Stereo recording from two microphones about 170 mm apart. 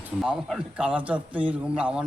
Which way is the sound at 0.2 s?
Centre (ahead or behind).